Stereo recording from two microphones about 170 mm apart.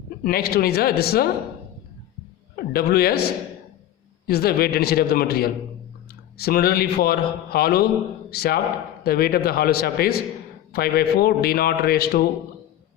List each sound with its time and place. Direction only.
0.2 s a man's voice: 65° left (ahead or behind)
2.7 s a man's voice: 65° left (ahead or behind)
4.3 s a man's voice: 65° left (ahead or behind)